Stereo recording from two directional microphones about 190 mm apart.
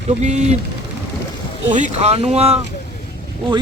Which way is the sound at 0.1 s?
35° right (ahead or behind).